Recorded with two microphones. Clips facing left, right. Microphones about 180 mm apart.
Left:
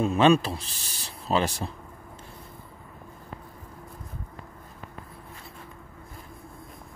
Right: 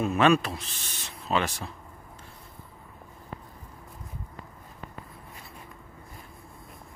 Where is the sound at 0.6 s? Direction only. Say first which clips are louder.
Even; 35° left (ahead or behind).